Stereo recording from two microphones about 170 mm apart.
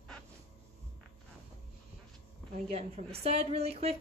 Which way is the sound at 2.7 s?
35° right (ahead or behind).